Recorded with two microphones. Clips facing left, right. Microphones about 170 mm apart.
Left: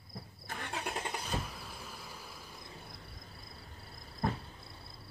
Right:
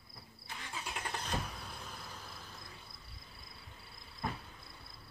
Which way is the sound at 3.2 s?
45° left (ahead or behind).